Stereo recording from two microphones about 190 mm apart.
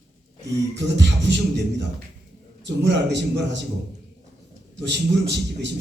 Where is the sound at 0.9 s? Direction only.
65° right (ahead or behind).